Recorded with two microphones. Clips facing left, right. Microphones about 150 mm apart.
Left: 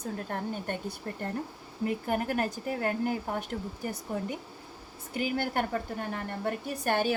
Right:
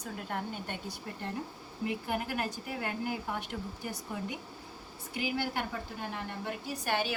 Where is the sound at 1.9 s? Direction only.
45° left (ahead or behind).